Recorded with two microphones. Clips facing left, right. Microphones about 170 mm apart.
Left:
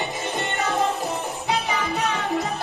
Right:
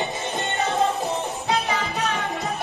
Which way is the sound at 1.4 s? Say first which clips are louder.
Left 1 dB; 15° left (ahead or behind).